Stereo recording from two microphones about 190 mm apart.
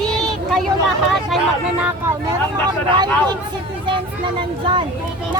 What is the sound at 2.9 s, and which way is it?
Speech, 20° right (ahead or behind).